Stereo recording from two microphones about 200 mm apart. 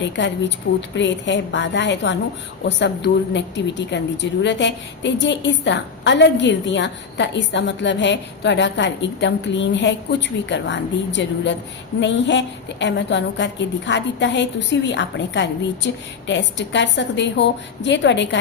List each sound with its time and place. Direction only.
0.8 s a woman's voice: 65° left (ahead or behind)